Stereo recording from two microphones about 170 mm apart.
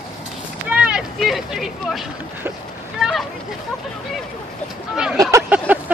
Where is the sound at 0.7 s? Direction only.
5° right (ahead or behind).